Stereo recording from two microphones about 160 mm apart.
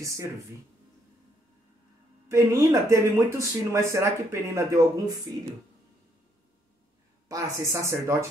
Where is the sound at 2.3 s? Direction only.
20° right (ahead or behind).